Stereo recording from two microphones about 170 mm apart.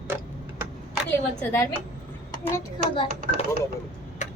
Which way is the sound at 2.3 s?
15° left (ahead or behind).